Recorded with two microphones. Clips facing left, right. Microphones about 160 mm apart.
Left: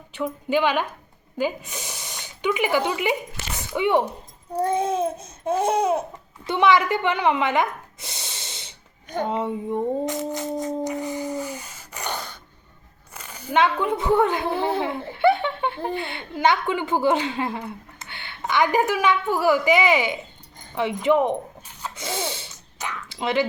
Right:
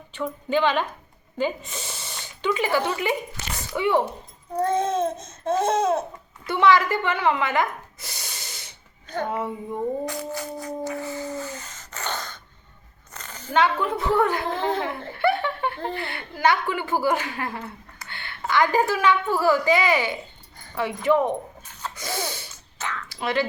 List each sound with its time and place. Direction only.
0.1 s babbling: 10° left (ahead or behind)
1.4 s speech: 10° left (ahead or behind)
4.5 s babbling: 10° left (ahead or behind)
6.4 s a sound: 20° left (ahead or behind)
13.1 s speech: 10° left (ahead or behind)
20.7 s a sound: 20° left (ahead or behind)